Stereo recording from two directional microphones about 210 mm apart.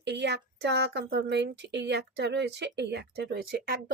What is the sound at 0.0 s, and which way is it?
A woman's voice, 55° right (ahead or behind).